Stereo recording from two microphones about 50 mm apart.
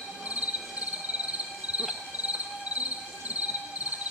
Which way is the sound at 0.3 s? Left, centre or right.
Right.